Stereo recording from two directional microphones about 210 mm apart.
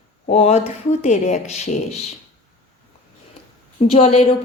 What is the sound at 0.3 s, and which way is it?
Speech, 30° left (ahead or behind).